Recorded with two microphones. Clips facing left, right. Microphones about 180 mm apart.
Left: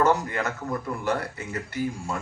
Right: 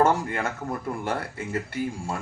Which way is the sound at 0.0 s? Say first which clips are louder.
Even; 30° right (ahead or behind).